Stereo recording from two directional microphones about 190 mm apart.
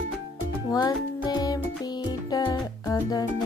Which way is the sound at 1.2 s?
20° left (ahead or behind).